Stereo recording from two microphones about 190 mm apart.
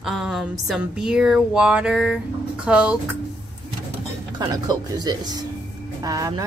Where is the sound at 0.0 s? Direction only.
Centre (ahead or behind).